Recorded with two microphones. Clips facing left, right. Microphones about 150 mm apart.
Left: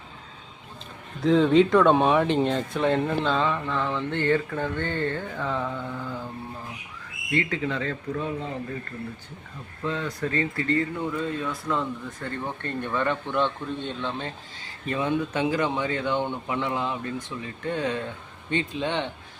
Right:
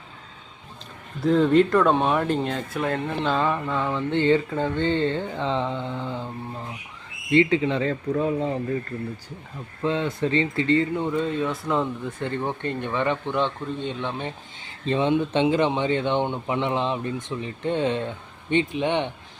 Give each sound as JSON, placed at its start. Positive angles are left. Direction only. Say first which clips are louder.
{"t": 1.2, "sound": "speech", "louder": "even", "side_deg": 0}
{"t": 7.3, "sound": "speech", "louder": "right 7 dB", "side_deg": -25}
{"t": 9.8, "sound": "speech", "louder": "right 5 dB", "side_deg": -25}
{"t": 12.6, "sound": "speech", "louder": "even", "side_deg": -15}